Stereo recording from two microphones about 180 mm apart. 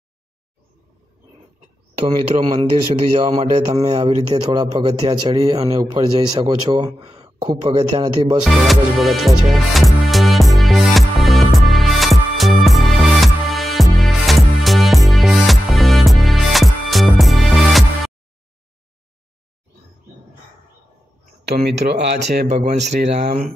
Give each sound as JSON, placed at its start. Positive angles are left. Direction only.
{"t": 2.3, "sound": "speech", "side_deg": -40}
{"t": 3.9, "sound": "speech", "side_deg": -25}
{"t": 8.5, "sound": "music", "side_deg": 0}
{"t": 21.5, "sound": "speech", "side_deg": -65}
{"t": 22.5, "sound": "speech", "side_deg": -40}